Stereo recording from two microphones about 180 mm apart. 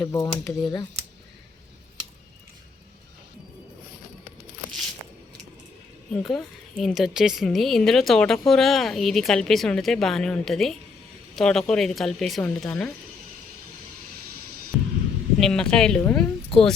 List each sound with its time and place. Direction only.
0.0 s speech: 20° left (ahead or behind)
6.1 s a woman's voice: centre (ahead or behind)
14.7 s throbbing: centre (ahead or behind)
15.4 s a woman's voice: 5° left (ahead or behind)